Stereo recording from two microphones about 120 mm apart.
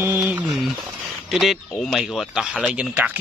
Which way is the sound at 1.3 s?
Centre (ahead or behind).